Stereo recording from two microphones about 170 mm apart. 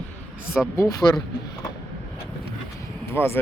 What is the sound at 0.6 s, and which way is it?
Speech, 5° left (ahead or behind).